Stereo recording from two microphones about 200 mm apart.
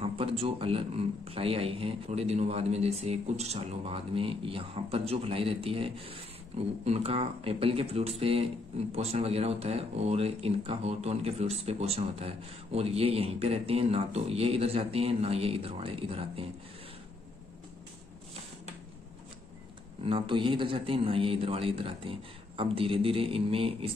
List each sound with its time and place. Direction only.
0.0 s a man's voice: 30° right (ahead or behind)
20.0 s a man's voice: 25° right (ahead or behind)